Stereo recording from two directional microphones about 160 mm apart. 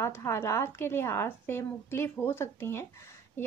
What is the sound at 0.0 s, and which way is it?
A woman's voice, 15° left (ahead or behind).